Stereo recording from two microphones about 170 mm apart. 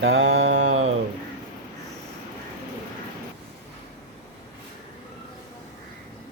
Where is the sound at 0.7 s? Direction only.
40° right (ahead or behind).